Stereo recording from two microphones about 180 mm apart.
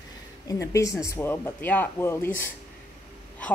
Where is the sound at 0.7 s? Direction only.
15° left (ahead or behind).